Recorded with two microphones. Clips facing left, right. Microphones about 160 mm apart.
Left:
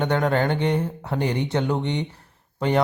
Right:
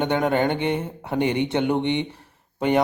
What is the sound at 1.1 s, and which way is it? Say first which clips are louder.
Speech: right 3 dB; 65° right (ahead or behind).